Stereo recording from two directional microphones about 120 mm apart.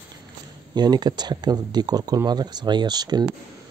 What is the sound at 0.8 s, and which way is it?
Speech, 35° right (ahead or behind).